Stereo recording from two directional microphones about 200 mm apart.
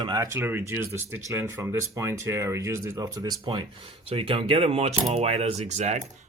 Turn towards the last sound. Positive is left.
turn(degrees=-35)  # may be behind; listen again after turning